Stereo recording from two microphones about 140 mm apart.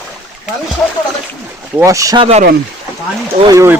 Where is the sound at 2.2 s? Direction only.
50° right (ahead or behind).